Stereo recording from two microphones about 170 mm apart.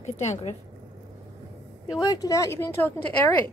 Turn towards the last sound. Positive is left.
turn(degrees=10)  # may be behind; listen again after turning